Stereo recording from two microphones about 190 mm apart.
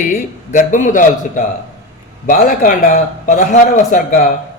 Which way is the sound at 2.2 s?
45° left (ahead or behind).